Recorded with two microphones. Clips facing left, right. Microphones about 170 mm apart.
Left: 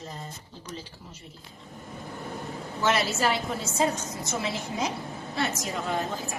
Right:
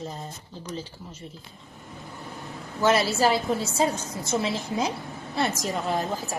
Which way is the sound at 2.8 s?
35° right (ahead or behind).